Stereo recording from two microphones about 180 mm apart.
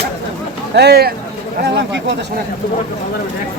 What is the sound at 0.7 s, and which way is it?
Speech, 65° right (ahead or behind).